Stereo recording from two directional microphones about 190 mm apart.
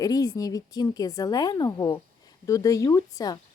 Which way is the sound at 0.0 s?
20° left (ahead or behind).